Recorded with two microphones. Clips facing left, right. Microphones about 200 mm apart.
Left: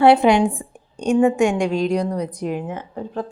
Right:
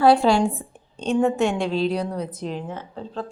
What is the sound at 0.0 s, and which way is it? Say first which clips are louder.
Speech: left 3 dB; 20° left (ahead or behind).